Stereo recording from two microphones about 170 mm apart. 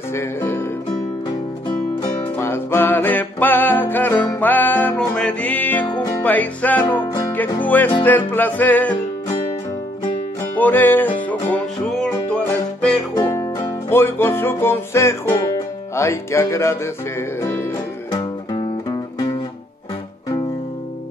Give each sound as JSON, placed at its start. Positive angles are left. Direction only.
{"t": 0.1, "sound": "music", "side_deg": 15}
{"t": 2.3, "sound": "music", "side_deg": 15}
{"t": 10.5, "sound": "music", "side_deg": 10}
{"t": 13.1, "sound": "music", "side_deg": 20}
{"t": 18.1, "sound": "music", "side_deg": 25}